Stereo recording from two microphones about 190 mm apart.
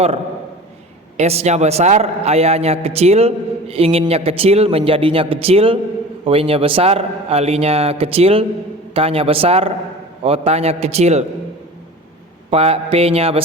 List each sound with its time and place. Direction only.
1.1 s a man's voice: 35° right (ahead or behind)
12.5 s a man's voice: 30° right (ahead or behind)